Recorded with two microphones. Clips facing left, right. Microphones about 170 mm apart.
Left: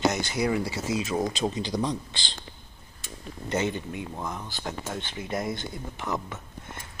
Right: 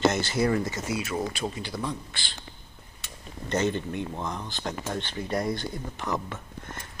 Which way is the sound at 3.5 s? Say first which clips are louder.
Right 2 dB; 10° left (ahead or behind).